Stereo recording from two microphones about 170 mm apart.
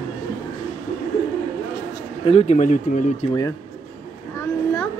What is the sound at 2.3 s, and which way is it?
Speech, 40° left (ahead or behind).